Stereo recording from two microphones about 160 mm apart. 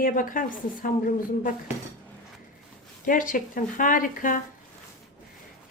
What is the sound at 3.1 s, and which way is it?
A woman's voice, 60° left (ahead or behind).